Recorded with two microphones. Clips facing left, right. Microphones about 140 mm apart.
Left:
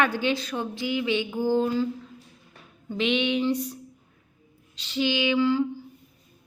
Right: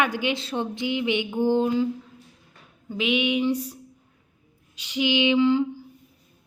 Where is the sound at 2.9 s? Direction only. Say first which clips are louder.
Right 1 dB; 10° right (ahead or behind).